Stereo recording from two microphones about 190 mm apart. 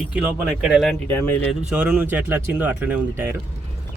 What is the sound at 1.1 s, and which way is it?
Speech, 10° left (ahead or behind).